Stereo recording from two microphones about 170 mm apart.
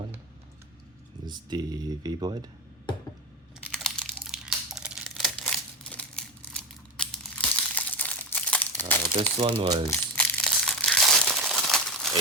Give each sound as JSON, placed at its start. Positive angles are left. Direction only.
{"t": 1.2, "sound": "speech", "side_deg": -25}
{"t": 3.7, "sound": "crumpling", "side_deg": 5}
{"t": 9.4, "sound": "speech", "side_deg": -30}
{"t": 9.9, "sound": "crumpling", "side_deg": 5}